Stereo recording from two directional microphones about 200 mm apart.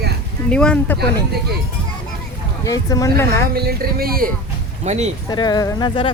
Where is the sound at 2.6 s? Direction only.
15° left (ahead or behind).